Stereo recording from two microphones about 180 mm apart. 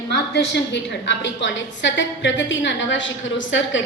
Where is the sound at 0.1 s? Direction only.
70° left (ahead or behind).